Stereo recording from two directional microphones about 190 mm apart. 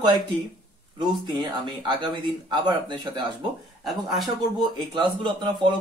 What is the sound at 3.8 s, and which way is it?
Speech, centre (ahead or behind).